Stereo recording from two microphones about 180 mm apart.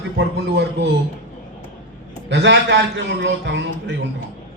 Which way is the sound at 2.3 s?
75° right (ahead or behind).